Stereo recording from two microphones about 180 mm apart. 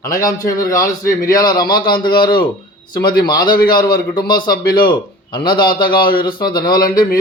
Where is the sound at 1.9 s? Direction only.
55° left (ahead or behind).